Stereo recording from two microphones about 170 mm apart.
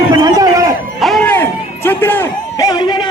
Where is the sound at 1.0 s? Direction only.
Centre (ahead or behind).